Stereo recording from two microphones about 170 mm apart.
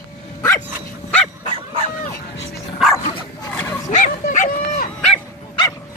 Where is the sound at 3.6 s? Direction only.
15° left (ahead or behind).